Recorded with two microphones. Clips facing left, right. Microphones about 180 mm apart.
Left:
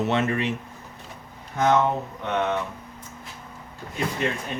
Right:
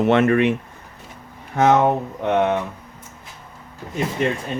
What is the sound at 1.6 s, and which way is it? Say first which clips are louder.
Speech: right 5 dB; 65° right (ahead or behind).